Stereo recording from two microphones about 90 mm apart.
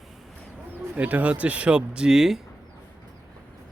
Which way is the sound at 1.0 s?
15° right (ahead or behind).